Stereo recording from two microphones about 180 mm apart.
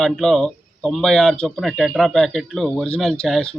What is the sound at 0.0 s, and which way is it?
Speech, centre (ahead or behind).